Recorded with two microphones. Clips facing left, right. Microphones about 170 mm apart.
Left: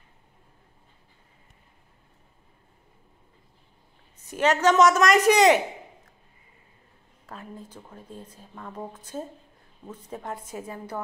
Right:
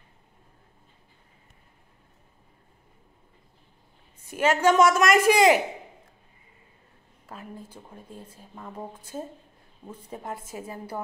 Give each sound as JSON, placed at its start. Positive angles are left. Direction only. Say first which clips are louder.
{"t": 4.3, "sound": "a woman's voice", "louder": "even", "side_deg": -10}
{"t": 7.2, "sound": "a woman's voice", "louder": "even", "side_deg": -10}
{"t": 9.8, "sound": "a woman's voice", "louder": "left 1 dB", "side_deg": -10}